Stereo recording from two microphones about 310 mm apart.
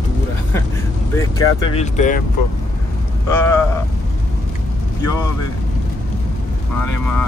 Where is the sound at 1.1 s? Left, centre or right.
Centre.